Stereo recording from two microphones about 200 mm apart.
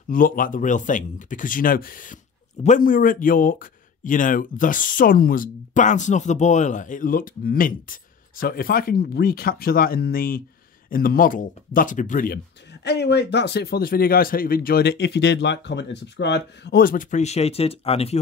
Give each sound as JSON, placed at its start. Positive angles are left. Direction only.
{"t": 0.1, "sound": "speech", "side_deg": 45}
{"t": 12.8, "sound": "speech", "side_deg": 55}